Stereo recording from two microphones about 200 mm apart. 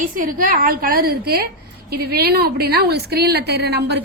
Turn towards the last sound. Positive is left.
turn(degrees=-55)  # may be behind; listen again after turning